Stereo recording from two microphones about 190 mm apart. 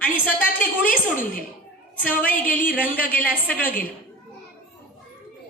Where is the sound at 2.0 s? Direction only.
10° left (ahead or behind).